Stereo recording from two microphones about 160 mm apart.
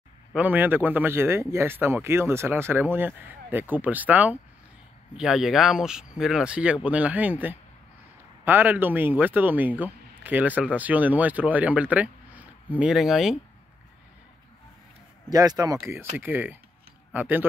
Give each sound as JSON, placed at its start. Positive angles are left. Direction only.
{"t": 0.3, "sound": "speech", "side_deg": -10}
{"t": 15.2, "sound": "speech", "side_deg": -25}